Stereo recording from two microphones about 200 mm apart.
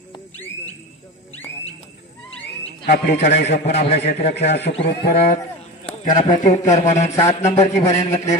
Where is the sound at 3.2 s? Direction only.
60° left (ahead or behind).